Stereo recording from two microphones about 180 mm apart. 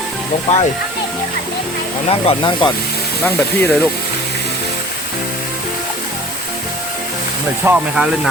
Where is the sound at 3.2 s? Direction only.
10° left (ahead or behind).